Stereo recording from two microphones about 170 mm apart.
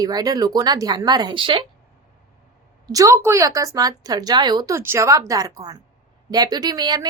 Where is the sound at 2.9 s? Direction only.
20° right (ahead or behind).